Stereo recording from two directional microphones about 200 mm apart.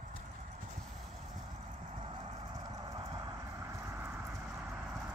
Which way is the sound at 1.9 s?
30° right (ahead or behind).